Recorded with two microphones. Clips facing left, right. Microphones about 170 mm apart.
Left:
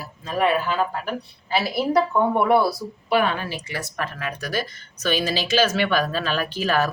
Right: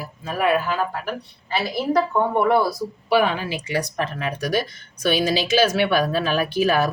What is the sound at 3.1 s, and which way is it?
Speech, 10° right (ahead or behind).